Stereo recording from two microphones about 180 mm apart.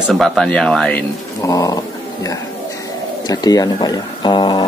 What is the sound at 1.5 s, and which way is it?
Speech, 20° left (ahead or behind).